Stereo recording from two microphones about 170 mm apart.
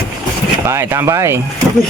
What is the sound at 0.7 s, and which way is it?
Speech, 15° right (ahead or behind).